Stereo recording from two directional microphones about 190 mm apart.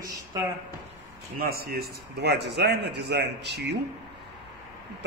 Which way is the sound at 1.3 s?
55° right (ahead or behind).